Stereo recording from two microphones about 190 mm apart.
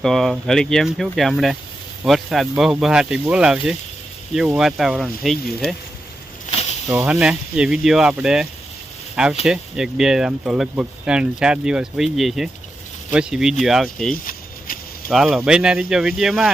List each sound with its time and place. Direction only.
0.0 s speech: centre (ahead or behind)
6.5 s snake: 35° left (ahead or behind)
6.8 s speech: 10° right (ahead or behind)
14.3 s a sound: 45° left (ahead or behind)
15.1 s speech: 5° right (ahead or behind)